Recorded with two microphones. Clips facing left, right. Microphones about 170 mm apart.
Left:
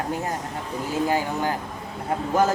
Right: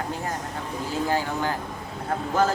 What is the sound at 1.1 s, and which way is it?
Speech, 15° left (ahead or behind).